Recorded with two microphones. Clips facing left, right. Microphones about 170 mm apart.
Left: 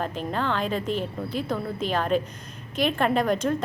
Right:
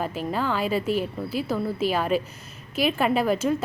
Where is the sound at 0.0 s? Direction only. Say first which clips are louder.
Right 1 dB; 5° right (ahead or behind).